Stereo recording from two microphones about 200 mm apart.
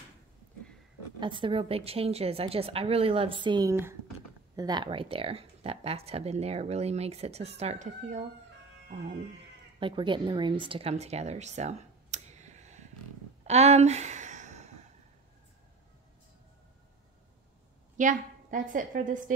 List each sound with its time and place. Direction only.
1.2 s a woman's voice: 25° right (ahead or behind)
9.8 s speech: 25° right (ahead or behind)
13.5 s a sound: 35° right (ahead or behind)
17.9 s a woman's voice: 40° right (ahead or behind)